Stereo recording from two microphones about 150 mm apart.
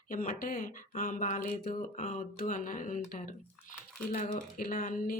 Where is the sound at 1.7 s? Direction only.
45° left (ahead or behind).